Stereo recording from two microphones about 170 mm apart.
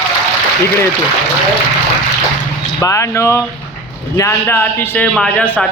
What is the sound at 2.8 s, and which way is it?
A man's voice, 15° left (ahead or behind).